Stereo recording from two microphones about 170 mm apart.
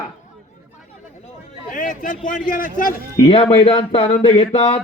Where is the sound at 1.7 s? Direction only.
50° left (ahead or behind).